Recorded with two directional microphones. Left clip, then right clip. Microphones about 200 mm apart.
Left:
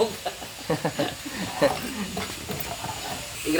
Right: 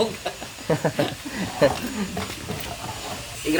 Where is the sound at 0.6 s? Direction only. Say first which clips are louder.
Right 4 dB; 25° right (ahead or behind).